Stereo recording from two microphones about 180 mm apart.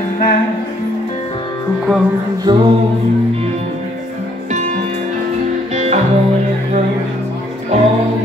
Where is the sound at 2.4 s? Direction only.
25° right (ahead or behind).